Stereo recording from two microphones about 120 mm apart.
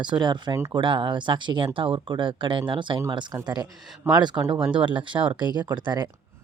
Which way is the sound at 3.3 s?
35° right (ahead or behind).